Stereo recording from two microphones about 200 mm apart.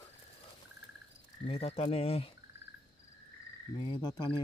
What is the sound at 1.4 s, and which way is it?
Speech, 30° left (ahead or behind).